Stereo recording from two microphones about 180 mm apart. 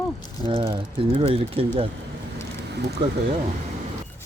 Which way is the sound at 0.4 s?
30° right (ahead or behind).